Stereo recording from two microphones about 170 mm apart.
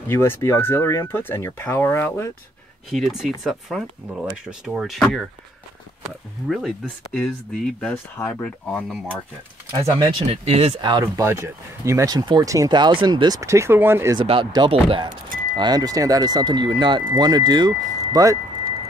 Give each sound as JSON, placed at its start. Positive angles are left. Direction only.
{"t": 0.1, "sound": "speech", "side_deg": 15}
{"t": 2.9, "sound": "speech", "side_deg": 0}
{"t": 7.2, "sound": "speech", "side_deg": 0}
{"t": 8.2, "sound": "speech", "side_deg": 15}
{"t": 9.7, "sound": "speech", "side_deg": -20}
{"t": 14.1, "sound": "speech", "side_deg": -30}
{"t": 15.0, "sound": "speech", "side_deg": -50}
{"t": 15.5, "sound": "speech", "side_deg": -25}